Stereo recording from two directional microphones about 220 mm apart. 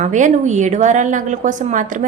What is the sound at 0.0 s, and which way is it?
A woman's voice, 35° right (ahead or behind).